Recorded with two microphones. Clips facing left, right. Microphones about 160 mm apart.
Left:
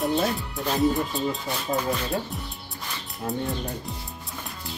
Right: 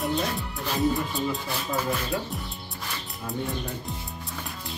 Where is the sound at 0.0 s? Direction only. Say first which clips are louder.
Left 3 dB; centre (ahead or behind).